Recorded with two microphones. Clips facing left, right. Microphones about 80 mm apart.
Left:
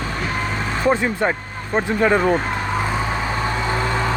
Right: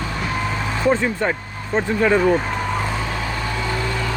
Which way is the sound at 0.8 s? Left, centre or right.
Centre.